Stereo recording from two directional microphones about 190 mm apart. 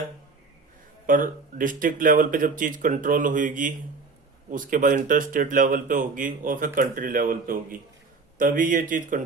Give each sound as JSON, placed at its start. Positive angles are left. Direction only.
{"t": 1.0, "sound": "speech", "side_deg": -45}